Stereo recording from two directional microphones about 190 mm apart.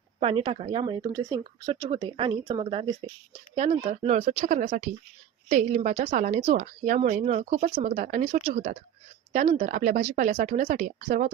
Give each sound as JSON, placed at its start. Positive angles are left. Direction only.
{"t": 0.2, "sound": "speech", "side_deg": -30}
{"t": 2.6, "sound": "a woman's voice", "side_deg": -30}